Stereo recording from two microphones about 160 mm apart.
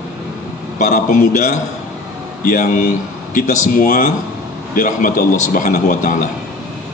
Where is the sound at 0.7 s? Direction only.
50° left (ahead or behind).